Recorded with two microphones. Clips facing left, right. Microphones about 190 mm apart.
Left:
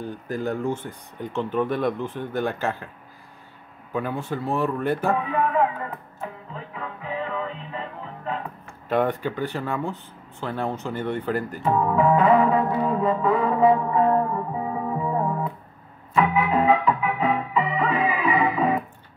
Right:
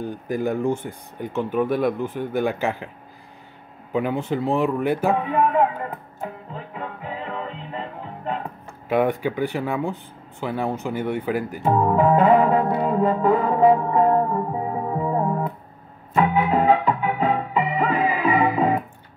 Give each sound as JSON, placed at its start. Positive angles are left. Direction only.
{"t": 0.0, "sound": "speech", "side_deg": -15}
{"t": 3.9, "sound": "speech", "side_deg": -20}
{"t": 6.8, "sound": "music", "side_deg": -30}
{"t": 8.8, "sound": "speech", "side_deg": -10}
{"t": 11.6, "sound": "music", "side_deg": -30}